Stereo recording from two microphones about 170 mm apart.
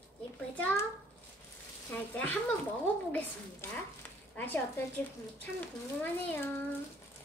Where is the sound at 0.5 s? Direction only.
10° left (ahead or behind).